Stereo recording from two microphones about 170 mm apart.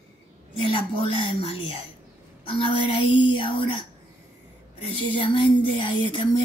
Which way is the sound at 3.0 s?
30° left (ahead or behind).